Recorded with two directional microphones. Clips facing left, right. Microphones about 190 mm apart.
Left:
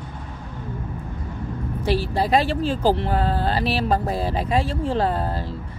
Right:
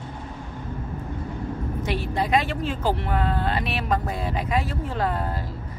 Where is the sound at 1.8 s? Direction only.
35° left (ahead or behind).